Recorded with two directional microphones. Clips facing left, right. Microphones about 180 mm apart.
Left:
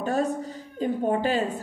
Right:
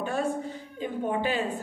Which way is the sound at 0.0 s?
40° left (ahead or behind).